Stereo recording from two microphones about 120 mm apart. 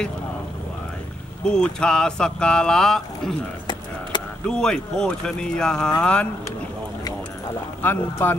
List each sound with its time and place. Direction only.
1.5 s speech: 5° left (ahead or behind)
4.1 s a sound: 40° left (ahead or behind)
4.5 s speech: 5° left (ahead or behind)
7.8 s speech: 15° left (ahead or behind)